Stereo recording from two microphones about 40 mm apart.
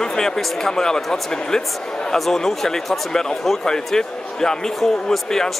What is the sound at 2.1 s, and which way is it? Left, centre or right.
Speech, centre.